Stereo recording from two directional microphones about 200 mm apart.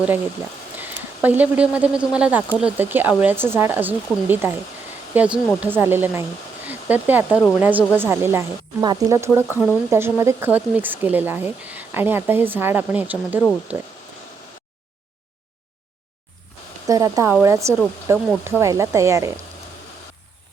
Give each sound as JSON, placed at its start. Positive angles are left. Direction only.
{"t": 0.8, "sound": "speech", "side_deg": -10}
{"t": 16.8, "sound": "speech", "side_deg": -15}